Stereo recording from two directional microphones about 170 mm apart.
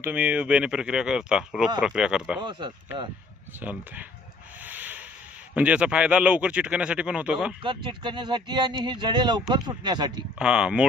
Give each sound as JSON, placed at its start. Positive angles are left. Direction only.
{"t": 0.0, "sound": "speech", "side_deg": -10}
{"t": 2.4, "sound": "speech", "side_deg": -25}
{"t": 3.6, "sound": "speech", "side_deg": -10}
{"t": 4.6, "sound": "sanding", "side_deg": -10}
{"t": 5.5, "sound": "speech", "side_deg": -5}
{"t": 7.6, "sound": "speech", "side_deg": -30}
{"t": 10.3, "sound": "speech", "side_deg": -5}